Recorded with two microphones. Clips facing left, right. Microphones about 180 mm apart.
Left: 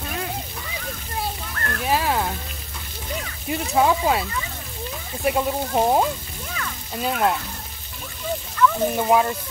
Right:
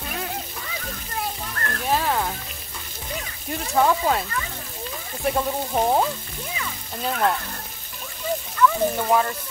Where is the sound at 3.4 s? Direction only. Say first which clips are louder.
Left 1 dB; 10° left (ahead or behind).